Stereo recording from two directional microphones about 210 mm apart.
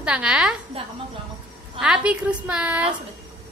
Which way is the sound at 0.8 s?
25° right (ahead or behind).